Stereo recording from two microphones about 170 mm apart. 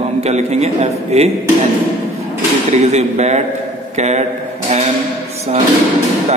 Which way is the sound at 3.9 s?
40° right (ahead or behind).